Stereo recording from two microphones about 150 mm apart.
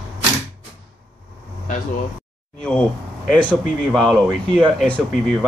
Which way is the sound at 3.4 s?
5° left (ahead or behind).